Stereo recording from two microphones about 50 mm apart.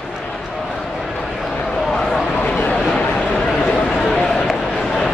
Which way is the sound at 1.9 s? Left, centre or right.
Centre.